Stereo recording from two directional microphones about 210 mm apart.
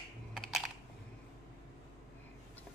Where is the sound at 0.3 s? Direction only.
Centre (ahead or behind).